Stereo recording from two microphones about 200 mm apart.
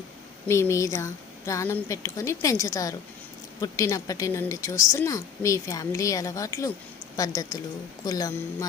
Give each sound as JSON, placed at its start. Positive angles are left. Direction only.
{"t": 0.4, "sound": "a woman's voice", "side_deg": 15}